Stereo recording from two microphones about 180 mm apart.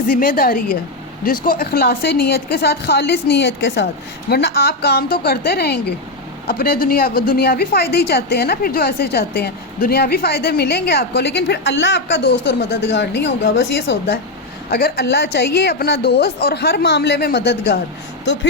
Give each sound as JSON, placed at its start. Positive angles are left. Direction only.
{"t": 0.1, "sound": "a woman's voice", "side_deg": 55}
{"t": 14.7, "sound": "a woman's voice", "side_deg": 60}